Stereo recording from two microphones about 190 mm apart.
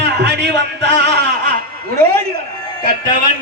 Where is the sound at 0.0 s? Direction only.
60° right (ahead or behind).